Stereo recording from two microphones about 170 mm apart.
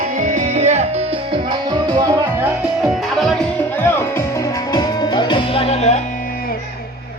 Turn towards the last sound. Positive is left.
turn(degrees=40)  # may be behind; listen again after turning